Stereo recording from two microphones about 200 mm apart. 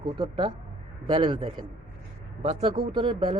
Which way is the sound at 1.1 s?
25° right (ahead or behind).